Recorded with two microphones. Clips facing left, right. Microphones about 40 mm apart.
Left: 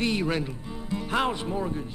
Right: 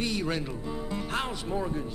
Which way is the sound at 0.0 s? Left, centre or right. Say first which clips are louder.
Left 4 dB; left.